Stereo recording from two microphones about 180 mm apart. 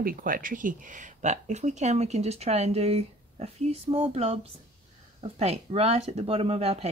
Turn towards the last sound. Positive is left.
turn(degrees=-35)  # may be behind; listen again after turning